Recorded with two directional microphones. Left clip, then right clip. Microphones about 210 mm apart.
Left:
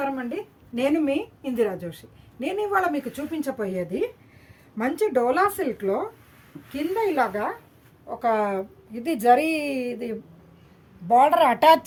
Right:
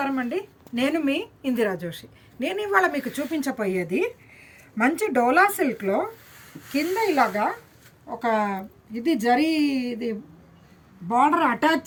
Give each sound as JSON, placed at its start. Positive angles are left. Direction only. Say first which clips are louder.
{"t": 0.0, "sound": "a woman's voice", "louder": "right 2 dB", "side_deg": 15}
{"t": 8.2, "sound": "a woman's voice", "louder": "left 1 dB", "side_deg": 30}